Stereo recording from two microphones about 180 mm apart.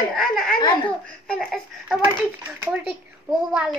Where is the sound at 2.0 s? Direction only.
15° right (ahead or behind).